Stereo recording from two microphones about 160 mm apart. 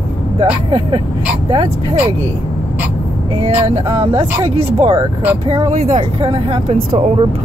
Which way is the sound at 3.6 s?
25° right (ahead or behind).